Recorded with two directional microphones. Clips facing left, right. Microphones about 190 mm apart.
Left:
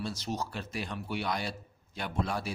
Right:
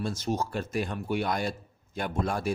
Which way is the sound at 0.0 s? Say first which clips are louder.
Right 5 dB; 50° right (ahead or behind).